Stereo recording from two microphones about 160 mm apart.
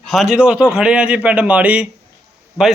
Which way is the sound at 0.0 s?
Centre (ahead or behind).